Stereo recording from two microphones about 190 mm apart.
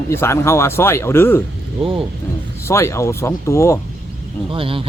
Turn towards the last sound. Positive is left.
turn(degrees=-30)  # may be behind; listen again after turning